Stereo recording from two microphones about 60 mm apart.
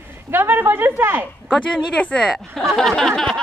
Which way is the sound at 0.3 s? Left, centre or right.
Right.